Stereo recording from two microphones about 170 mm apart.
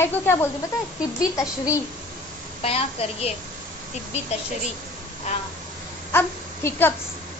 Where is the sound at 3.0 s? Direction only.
35° left (ahead or behind).